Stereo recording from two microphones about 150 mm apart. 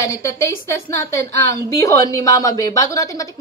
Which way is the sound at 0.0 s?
20° left (ahead or behind).